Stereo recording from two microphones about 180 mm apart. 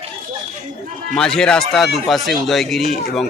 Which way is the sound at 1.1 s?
5° left (ahead or behind).